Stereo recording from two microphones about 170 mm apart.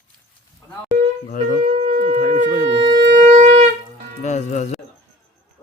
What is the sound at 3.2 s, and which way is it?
Wind instrument, 45° right (ahead or behind).